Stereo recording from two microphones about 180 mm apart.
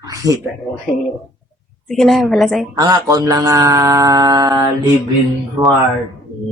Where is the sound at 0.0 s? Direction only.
20° right (ahead or behind).